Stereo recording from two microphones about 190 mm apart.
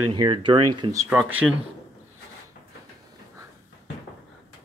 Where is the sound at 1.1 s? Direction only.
5° right (ahead or behind).